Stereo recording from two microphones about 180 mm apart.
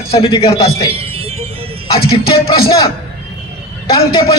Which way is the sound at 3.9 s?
25° left (ahead or behind).